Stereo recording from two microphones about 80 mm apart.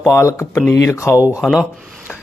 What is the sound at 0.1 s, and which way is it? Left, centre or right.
Speech, left.